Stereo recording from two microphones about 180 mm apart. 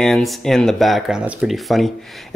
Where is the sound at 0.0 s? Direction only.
Centre (ahead or behind).